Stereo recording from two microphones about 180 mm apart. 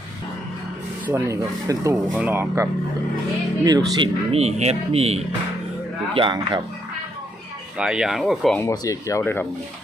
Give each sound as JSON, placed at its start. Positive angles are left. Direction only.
{"t": 1.0, "sound": "speech", "side_deg": -15}
{"t": 7.8, "sound": "speech", "side_deg": -5}
{"t": 8.5, "sound": "speech", "side_deg": 20}